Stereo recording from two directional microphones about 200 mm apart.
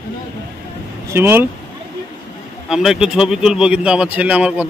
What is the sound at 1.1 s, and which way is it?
Speech, 10° right (ahead or behind).